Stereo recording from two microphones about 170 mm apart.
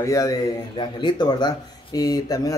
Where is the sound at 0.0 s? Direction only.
20° left (ahead or behind).